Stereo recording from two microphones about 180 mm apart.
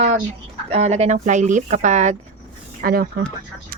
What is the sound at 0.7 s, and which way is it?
A woman's voice, 35° right (ahead or behind).